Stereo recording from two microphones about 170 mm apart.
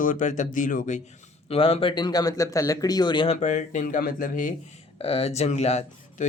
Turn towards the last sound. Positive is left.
turn(degrees=40)  # may be behind; listen again after turning